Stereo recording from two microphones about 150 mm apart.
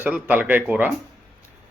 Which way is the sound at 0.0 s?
10° right (ahead or behind).